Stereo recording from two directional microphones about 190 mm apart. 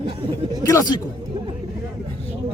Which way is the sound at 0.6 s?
15° left (ahead or behind).